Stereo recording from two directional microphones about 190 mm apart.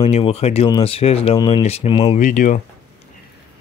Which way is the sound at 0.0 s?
30° left (ahead or behind).